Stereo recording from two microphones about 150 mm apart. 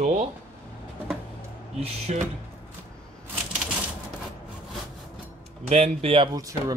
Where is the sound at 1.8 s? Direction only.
45° right (ahead or behind).